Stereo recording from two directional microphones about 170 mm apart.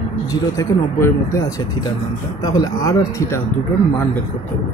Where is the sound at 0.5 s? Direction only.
15° left (ahead or behind).